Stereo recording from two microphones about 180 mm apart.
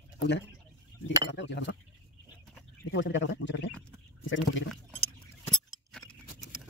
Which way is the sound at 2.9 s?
90° left.